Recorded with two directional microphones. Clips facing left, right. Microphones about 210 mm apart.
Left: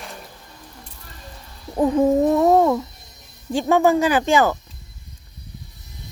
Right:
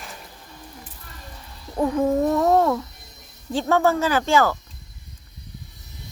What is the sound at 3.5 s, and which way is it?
Speech, 15° left (ahead or behind).